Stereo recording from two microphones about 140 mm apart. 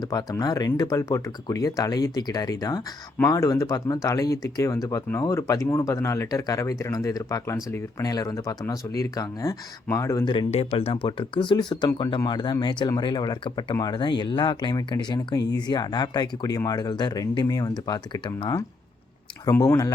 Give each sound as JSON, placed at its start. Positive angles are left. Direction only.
{"t": 0.0, "sound": "speech", "side_deg": 25}
{"t": 10.3, "sound": "speech", "side_deg": 45}